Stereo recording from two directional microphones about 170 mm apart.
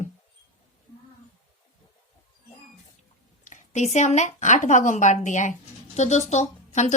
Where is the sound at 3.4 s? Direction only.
45° left (ahead or behind).